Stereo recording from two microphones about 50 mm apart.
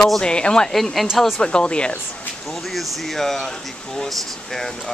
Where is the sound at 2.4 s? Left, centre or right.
Centre.